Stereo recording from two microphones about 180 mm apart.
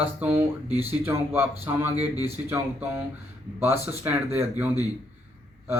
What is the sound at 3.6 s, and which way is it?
Speech, 15° right (ahead or behind).